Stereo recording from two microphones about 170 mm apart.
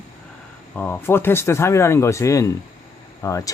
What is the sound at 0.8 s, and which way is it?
Speech, 10° left (ahead or behind).